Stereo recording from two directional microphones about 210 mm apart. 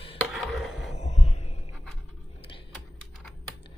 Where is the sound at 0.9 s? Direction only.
30° left (ahead or behind).